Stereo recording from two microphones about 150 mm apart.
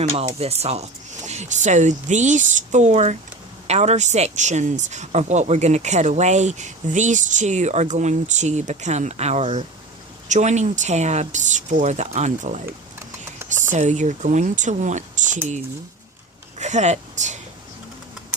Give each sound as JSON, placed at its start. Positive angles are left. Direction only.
{"t": 0.0, "sound": "speech", "side_deg": -40}
{"t": 13.4, "sound": "a sound", "side_deg": -15}
{"t": 13.7, "sound": "speech", "side_deg": -55}
{"t": 16.6, "sound": "speech", "side_deg": -50}